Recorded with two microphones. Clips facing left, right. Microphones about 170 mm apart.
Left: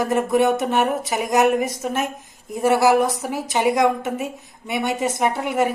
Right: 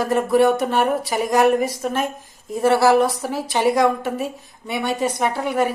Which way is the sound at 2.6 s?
20° left (ahead or behind).